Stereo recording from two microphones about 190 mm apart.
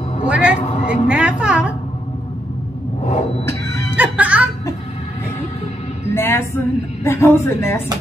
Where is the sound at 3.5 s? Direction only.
15° left (ahead or behind).